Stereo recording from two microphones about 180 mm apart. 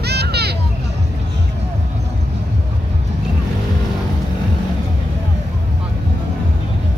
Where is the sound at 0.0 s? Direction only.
65° right (ahead or behind).